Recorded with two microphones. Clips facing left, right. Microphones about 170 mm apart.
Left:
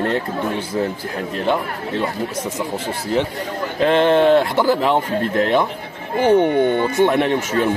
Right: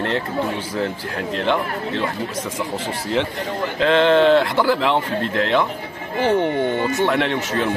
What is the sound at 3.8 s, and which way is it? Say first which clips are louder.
Speech: left 1 dB; 10° left (ahead or behind).